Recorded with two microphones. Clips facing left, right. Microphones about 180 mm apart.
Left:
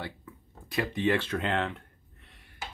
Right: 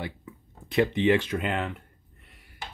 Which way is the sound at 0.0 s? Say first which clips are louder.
Right 3 dB; 20° right (ahead or behind).